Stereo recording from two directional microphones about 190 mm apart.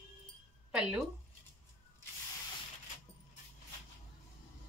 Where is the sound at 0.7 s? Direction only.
5° right (ahead or behind).